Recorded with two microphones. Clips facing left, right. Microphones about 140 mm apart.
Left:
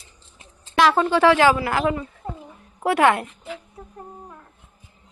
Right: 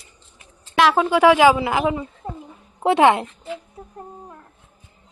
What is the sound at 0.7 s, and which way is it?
A woman's voice, 5° right (ahead or behind).